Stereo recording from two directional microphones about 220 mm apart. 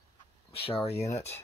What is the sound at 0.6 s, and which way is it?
Speech, 25° left (ahead or behind).